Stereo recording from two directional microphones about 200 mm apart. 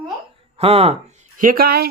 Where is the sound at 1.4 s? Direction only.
45° right (ahead or behind).